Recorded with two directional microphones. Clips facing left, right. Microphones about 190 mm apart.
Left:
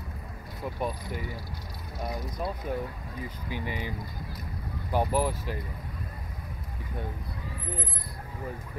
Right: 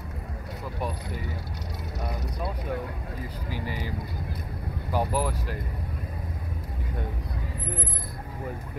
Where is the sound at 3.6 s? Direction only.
40° right (ahead or behind).